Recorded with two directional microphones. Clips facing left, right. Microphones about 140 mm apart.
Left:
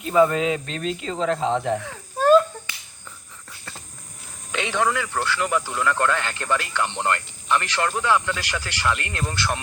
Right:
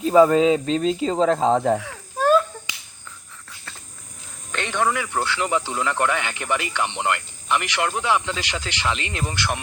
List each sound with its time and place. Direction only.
0.0 s speech: 35° right (ahead or behind)
1.8 s a sound: centre (ahead or behind)
4.5 s speech: 5° left (ahead or behind)
4.9 s speech: 20° right (ahead or behind)